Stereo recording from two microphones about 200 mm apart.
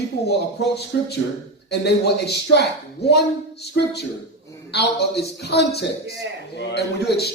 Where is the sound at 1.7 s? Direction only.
55° left (ahead or behind).